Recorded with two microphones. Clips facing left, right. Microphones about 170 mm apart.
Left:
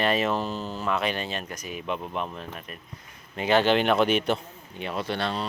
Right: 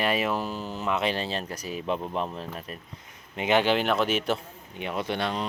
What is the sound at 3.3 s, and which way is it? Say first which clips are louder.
Speech: left 2 dB; 15° right (ahead or behind).